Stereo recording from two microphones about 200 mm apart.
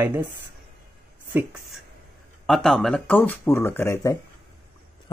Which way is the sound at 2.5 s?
5° left (ahead or behind).